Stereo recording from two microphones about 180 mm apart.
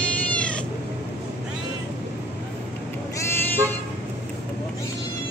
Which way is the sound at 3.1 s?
10° left (ahead or behind).